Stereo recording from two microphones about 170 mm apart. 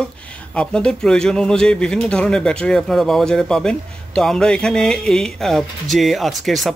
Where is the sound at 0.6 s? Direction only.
5° left (ahead or behind).